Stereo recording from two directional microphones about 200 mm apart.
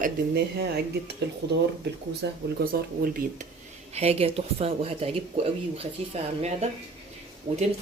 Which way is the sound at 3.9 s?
30° right (ahead or behind).